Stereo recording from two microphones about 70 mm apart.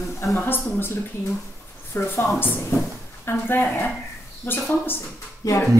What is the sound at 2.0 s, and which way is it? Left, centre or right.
Speech, left.